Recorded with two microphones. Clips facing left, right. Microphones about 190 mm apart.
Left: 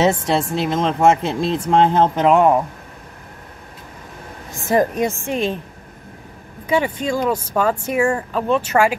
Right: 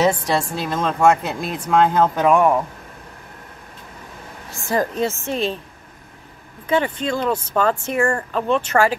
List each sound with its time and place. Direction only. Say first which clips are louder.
0.0 s speech: left 1 dB; 25° left (ahead or behind)
4.5 s a woman's voice: left 4 dB; 20° left (ahead or behind)
6.7 s a woman's voice: left 1 dB; 10° left (ahead or behind)